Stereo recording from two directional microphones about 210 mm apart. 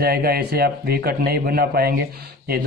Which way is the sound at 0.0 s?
45° right (ahead or behind).